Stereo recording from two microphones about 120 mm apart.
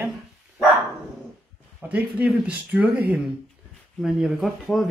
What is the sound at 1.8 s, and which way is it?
Speech, 10° right (ahead or behind).